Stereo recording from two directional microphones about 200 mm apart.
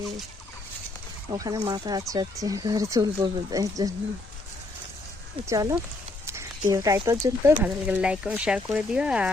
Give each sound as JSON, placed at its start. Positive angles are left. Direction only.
{"t": 1.3, "sound": "speech", "side_deg": -20}
{"t": 5.5, "sound": "speech", "side_deg": -15}